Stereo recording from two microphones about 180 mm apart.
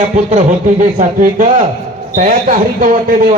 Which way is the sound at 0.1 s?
40° right (ahead or behind).